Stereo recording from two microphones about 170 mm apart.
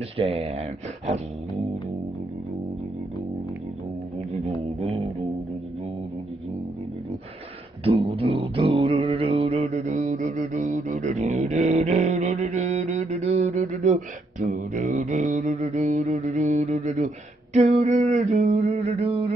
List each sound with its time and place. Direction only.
0.2 s speech: 35° right (ahead or behind)
4.7 s music: 40° right (ahead or behind)
7.8 s mantra: 35° right (ahead or behind)
17.6 s a sound: 40° right (ahead or behind)